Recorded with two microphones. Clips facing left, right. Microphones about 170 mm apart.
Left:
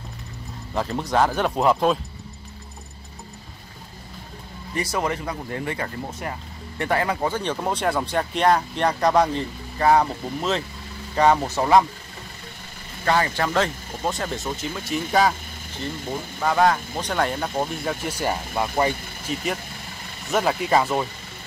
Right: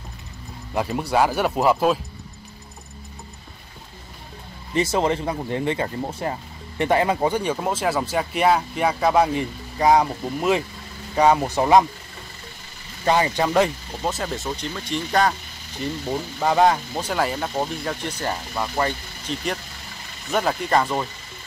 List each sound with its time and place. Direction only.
0.7 s speech: 10° right (ahead or behind)
4.7 s speech: 25° right (ahead or behind)
13.0 s speech: 15° right (ahead or behind)
14.0 s speech: centre (ahead or behind)
16.3 s speech: 20° right (ahead or behind)
17.0 s speech: 5° right (ahead or behind)